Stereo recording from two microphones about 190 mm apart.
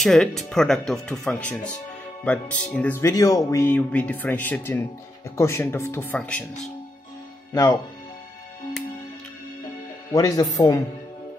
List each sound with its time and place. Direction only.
0.0 s speech: centre (ahead or behind)
7.5 s speech: 15° left (ahead or behind)
10.1 s speech: 20° left (ahead or behind)